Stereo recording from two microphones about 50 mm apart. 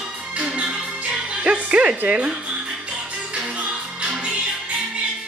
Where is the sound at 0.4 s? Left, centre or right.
Right.